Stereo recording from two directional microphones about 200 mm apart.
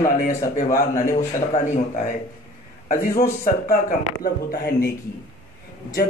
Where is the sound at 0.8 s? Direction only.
40° left (ahead or behind).